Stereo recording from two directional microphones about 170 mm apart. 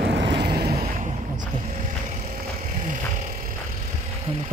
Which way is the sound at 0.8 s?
45° right (ahead or behind).